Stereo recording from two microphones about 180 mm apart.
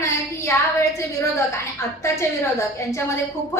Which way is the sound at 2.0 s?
15° left (ahead or behind).